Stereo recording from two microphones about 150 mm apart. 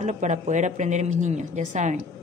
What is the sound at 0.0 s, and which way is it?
A woman's voice, 55° right (ahead or behind).